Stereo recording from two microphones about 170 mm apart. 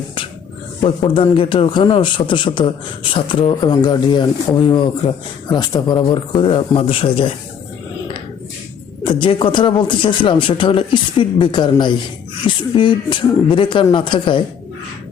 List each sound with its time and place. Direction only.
0.8 s a man's voice: 30° left (ahead or behind)
9.0 s a man's voice: 30° left (ahead or behind)